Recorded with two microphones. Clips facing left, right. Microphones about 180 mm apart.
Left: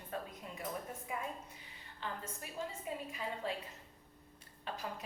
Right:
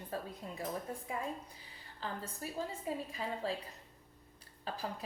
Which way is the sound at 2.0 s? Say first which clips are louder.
Right 3 dB; 35° right (ahead or behind).